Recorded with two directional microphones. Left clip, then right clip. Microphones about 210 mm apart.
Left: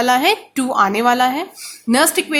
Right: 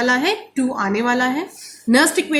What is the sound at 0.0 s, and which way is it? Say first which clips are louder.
A woman's voice: left 3 dB; 35° left (ahead or behind).